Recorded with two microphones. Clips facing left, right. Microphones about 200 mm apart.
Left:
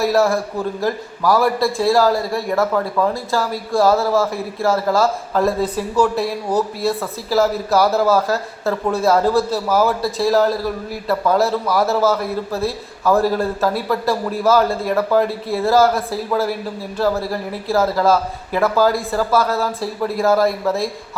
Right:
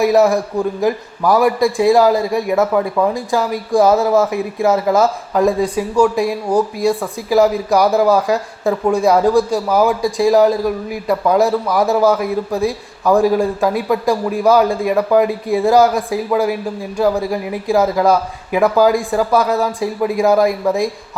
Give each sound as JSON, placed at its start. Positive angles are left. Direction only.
{"t": 0.0, "sound": "a man's voice", "side_deg": -20}